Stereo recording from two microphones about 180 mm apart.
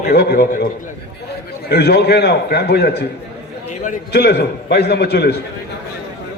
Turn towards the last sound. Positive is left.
turn(degrees=65)  # may be behind; listen again after turning